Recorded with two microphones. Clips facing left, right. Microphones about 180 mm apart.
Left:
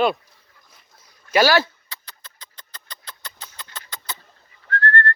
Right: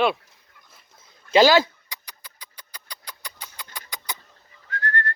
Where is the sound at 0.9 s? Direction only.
25° right (ahead or behind).